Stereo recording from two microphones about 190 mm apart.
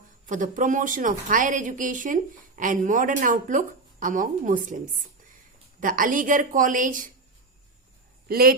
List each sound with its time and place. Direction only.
0.3 s speech: 45° right (ahead or behind)
5.8 s speech: 45° right (ahead or behind)
8.3 s speech: 55° right (ahead or behind)